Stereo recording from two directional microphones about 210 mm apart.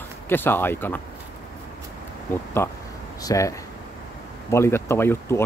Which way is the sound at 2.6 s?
10° left (ahead or behind).